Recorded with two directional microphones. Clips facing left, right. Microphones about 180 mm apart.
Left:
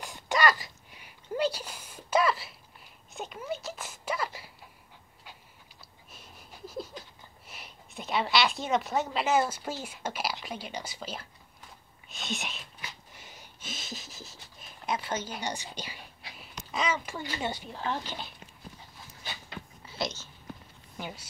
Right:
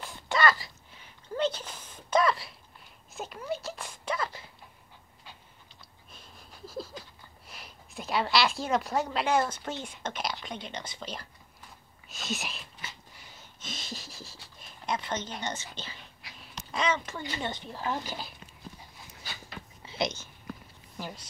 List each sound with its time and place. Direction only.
0.0 s a sound: 15° left (ahead or behind)
3.2 s speech: centre (ahead or behind)
6.1 s a sound: centre (ahead or behind)
7.4 s speech: centre (ahead or behind)
13.1 s snort: 20° left (ahead or behind)
13.7 s pant: 5° left (ahead or behind)
14.6 s speech: 5° left (ahead or behind)
17.7 s speech: 5° right (ahead or behind)
19.9 s speech: 15° right (ahead or behind)
21.0 s speech: 5° left (ahead or behind)